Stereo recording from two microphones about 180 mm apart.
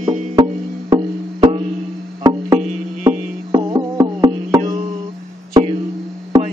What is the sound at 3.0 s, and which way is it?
Music, 20° right (ahead or behind).